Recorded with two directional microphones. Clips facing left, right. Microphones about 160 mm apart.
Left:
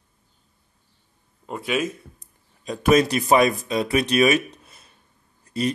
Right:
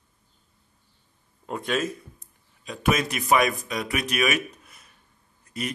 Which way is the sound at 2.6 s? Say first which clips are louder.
Left 7 dB; 35° left (ahead or behind).